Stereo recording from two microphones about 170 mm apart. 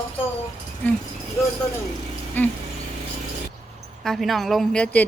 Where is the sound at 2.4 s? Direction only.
10° left (ahead or behind).